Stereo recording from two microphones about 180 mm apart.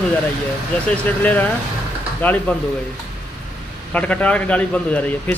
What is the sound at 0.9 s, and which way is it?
A man's voice, 10° left (ahead or behind).